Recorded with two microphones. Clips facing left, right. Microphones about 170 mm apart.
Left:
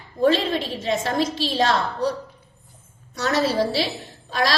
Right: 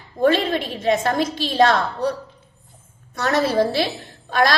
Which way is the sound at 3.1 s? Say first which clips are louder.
Right 2 dB; 55° right (ahead or behind).